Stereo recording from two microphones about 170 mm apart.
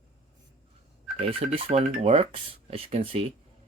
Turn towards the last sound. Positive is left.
turn(degrees=-35)  # may be behind; listen again after turning